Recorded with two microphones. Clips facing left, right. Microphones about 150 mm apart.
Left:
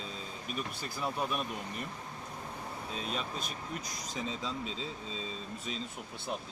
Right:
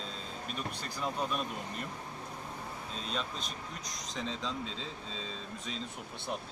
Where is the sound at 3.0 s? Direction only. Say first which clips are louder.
Even; 5° left (ahead or behind).